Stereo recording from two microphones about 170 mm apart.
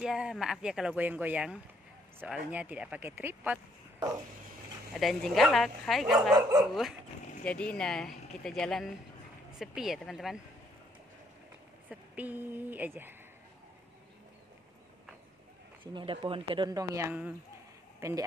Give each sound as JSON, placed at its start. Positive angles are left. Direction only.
{"t": 0.0, "sound": "speech", "side_deg": -5}
{"t": 4.9, "sound": "speech", "side_deg": 0}
{"t": 11.9, "sound": "speech", "side_deg": -10}
{"t": 15.9, "sound": "speech", "side_deg": -30}